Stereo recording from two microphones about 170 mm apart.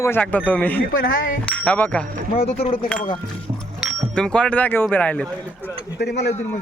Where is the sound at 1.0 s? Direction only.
60° left (ahead or behind).